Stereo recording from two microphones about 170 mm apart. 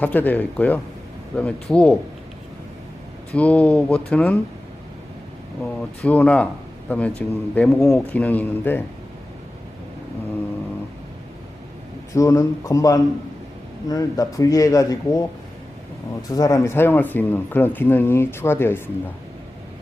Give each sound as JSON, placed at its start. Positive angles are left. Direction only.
{"t": 0.0, "sound": "speech", "side_deg": 10}
{"t": 3.3, "sound": "speech", "side_deg": 10}
{"t": 5.6, "sound": "speech", "side_deg": 10}
{"t": 12.1, "sound": "speech", "side_deg": 20}
{"t": 16.3, "sound": "speech", "side_deg": 20}